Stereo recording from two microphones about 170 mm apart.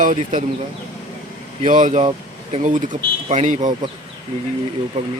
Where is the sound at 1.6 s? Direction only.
45° right (ahead or behind).